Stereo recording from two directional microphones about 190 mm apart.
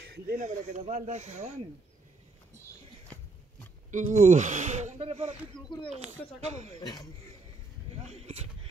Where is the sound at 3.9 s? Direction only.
40° right (ahead or behind).